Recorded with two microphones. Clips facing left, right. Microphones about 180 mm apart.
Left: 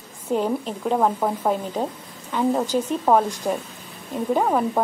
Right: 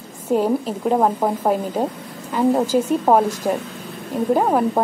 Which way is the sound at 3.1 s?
25° right (ahead or behind).